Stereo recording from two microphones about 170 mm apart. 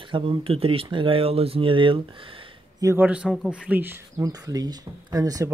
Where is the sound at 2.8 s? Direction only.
10° right (ahead or behind).